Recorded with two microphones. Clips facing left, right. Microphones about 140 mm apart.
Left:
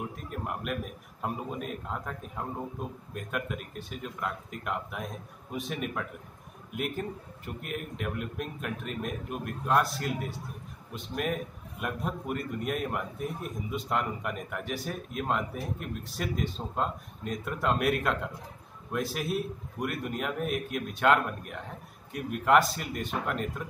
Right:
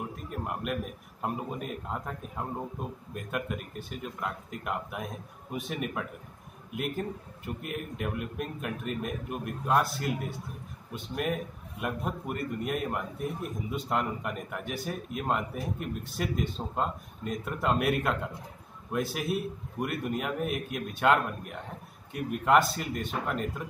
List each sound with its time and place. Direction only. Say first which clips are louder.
0.1 s a man's voice: right 1 dB; centre (ahead or behind)